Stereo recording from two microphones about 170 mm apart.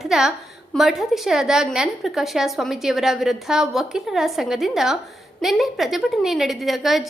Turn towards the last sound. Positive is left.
turn(degrees=0)  # may be behind; listen again after turning